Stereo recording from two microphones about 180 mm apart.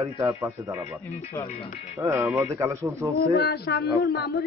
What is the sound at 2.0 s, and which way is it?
A man's voice, 10° right (ahead or behind).